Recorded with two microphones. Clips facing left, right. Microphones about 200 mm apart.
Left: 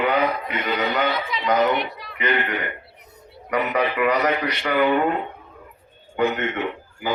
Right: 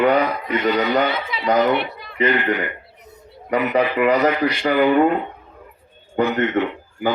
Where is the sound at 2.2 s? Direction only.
30° right (ahead or behind).